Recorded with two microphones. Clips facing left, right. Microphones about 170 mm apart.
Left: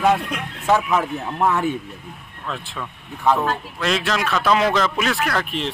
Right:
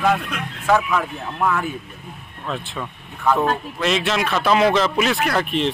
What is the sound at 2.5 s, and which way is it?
Speech, 5° right (ahead or behind).